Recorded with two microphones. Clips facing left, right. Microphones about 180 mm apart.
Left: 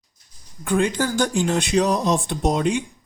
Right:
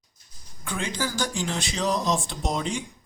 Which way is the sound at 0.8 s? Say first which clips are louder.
Left 7 dB; 55° left (ahead or behind).